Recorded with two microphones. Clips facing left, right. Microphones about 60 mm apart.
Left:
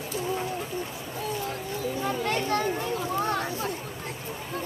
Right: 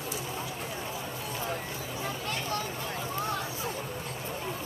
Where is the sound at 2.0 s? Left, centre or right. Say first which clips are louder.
Left 6 dB; left.